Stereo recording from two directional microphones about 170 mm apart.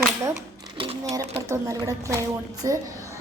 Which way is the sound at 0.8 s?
30° right (ahead or behind).